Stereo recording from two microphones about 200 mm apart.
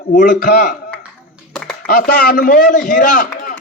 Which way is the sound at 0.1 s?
40° left (ahead or behind).